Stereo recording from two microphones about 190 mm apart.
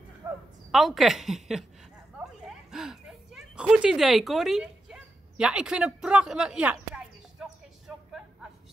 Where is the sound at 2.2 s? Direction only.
5° right (ahead or behind).